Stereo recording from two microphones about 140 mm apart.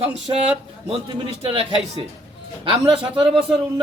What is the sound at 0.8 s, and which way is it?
Speech, 40° right (ahead or behind).